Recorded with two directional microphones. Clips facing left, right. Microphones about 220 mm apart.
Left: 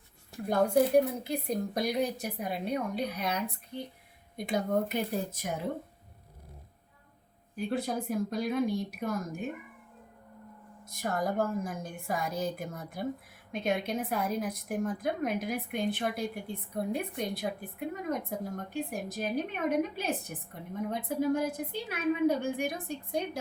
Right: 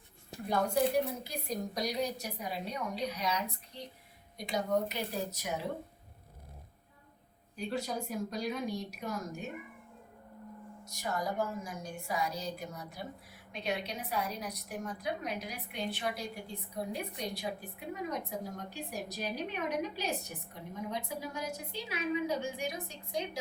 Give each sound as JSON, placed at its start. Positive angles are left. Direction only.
{"t": 0.7, "sound": "a woman's voice", "side_deg": 55}
{"t": 7.5, "sound": "a woman's voice", "side_deg": 55}
{"t": 10.8, "sound": "a woman's voice", "side_deg": 55}